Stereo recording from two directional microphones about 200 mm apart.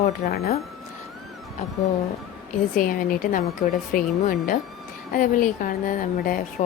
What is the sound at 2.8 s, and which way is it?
A woman's voice, 40° left (ahead or behind).